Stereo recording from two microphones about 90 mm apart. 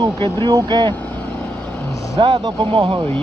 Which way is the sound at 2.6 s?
80° right.